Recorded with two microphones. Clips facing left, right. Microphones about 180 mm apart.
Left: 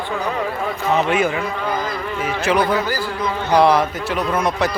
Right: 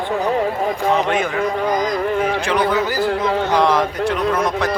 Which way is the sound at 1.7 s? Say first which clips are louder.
Right 4 dB; 15° right (ahead or behind).